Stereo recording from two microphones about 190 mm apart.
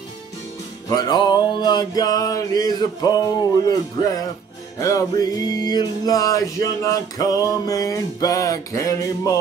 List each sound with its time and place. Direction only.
0.8 s music: 20° left (ahead or behind)